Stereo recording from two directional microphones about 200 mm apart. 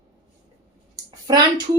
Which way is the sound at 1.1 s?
20° right (ahead or behind).